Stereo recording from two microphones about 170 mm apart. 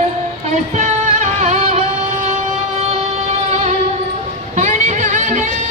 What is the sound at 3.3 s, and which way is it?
Music, 40° right (ahead or behind).